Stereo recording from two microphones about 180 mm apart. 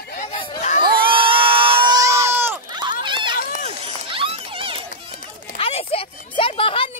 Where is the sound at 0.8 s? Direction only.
30° right (ahead or behind); by 2.6 s 10° right (ahead or behind).